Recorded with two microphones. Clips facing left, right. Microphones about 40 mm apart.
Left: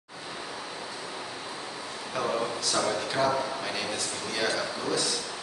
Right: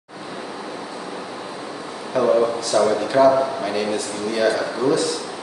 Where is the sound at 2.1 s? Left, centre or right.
Centre.